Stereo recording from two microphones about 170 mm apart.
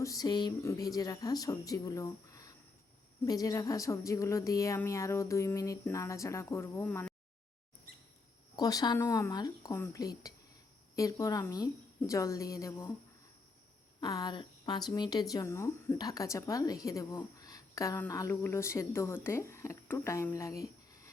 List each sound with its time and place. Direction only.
0.0 s speech: 20° left (ahead or behind)
8.5 s speech: 25° left (ahead or behind)
14.0 s speech: 20° left (ahead or behind)